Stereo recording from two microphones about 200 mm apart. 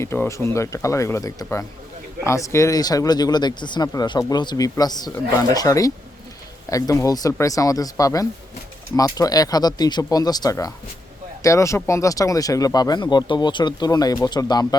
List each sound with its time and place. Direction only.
0.0 s speech: 15° left (ahead or behind)